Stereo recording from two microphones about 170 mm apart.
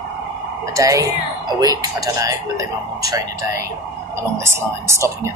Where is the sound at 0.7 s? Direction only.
20° right (ahead or behind).